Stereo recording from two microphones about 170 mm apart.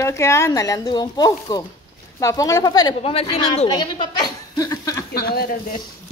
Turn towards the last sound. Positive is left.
turn(degrees=65)  # may be behind; listen again after turning